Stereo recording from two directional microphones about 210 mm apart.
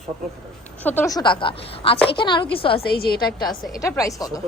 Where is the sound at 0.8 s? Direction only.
10° left (ahead or behind); by 2.8 s 25° left (ahead or behind).